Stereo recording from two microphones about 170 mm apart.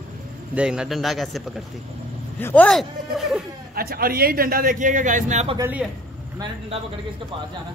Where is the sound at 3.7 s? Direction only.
60° right (ahead or behind); by 5.6 s 45° right (ahead or behind).